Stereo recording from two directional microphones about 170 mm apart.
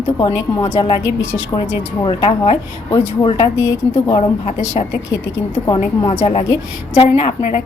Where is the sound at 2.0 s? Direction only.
30° left (ahead or behind).